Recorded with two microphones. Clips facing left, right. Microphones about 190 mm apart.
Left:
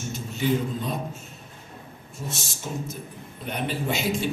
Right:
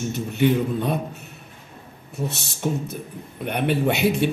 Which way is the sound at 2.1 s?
65° right (ahead or behind).